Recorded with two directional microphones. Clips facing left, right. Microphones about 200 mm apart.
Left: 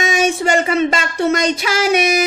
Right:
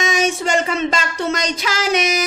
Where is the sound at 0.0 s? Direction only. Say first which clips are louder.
Left 2 dB; 55° left (ahead or behind).